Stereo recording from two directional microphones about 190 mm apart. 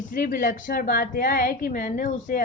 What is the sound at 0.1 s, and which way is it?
A woman's voice, 45° left (ahead or behind).